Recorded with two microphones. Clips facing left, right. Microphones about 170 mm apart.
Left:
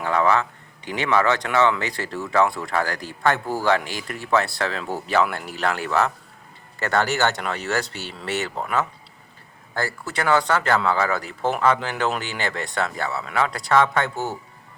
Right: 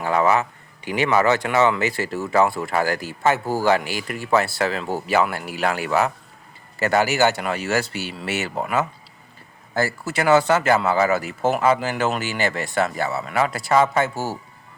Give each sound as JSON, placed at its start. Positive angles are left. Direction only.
{"t": 0.0, "sound": "speech", "side_deg": -5}